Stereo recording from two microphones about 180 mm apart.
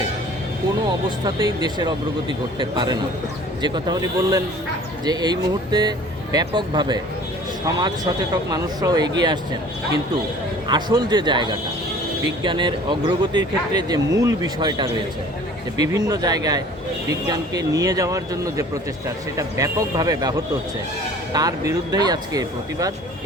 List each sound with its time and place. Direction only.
1.2 s speech: 25° right (ahead or behind)